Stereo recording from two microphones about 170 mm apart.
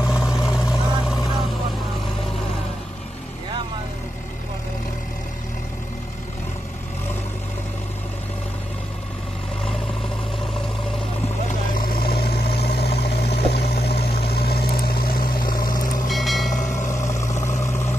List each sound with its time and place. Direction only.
0.0 s vehicle: 5° right (ahead or behind)
11.7 s vehicle: 60° left (ahead or behind)
16.1 s vehicle: centre (ahead or behind)
17.0 s vehicle: 20° left (ahead or behind)